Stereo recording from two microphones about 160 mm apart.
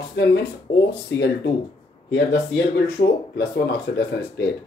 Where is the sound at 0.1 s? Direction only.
90° left.